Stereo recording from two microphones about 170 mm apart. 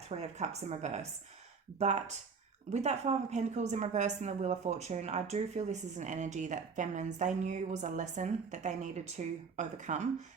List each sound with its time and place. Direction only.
0.1 s a woman's voice: 40° right (ahead or behind)